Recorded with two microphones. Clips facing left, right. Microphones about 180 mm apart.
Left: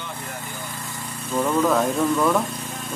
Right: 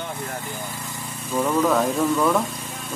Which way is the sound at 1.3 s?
Centre (ahead or behind).